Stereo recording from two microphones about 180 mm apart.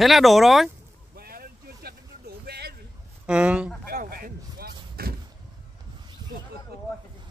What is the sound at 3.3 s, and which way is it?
Speech, 5° right (ahead or behind).